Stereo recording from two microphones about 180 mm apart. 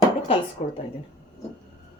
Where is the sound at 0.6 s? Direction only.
40° left (ahead or behind).